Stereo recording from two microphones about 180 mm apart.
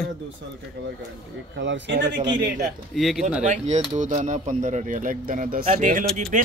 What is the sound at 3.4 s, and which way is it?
Speech, 40° right (ahead or behind).